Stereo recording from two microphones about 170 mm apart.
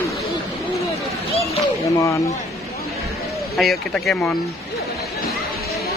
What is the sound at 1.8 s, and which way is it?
Speech, 20° left (ahead or behind).